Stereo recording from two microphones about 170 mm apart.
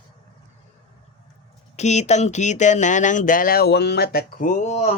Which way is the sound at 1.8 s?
40° left (ahead or behind).